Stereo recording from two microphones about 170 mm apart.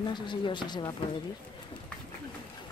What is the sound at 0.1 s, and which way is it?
Speech, 25° left (ahead or behind).